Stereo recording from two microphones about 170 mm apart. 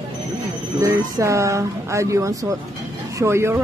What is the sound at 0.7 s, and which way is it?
Speech, 20° right (ahead or behind).